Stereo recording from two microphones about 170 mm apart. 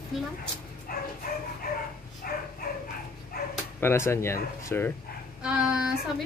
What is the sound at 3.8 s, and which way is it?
Speech, 15° left (ahead or behind).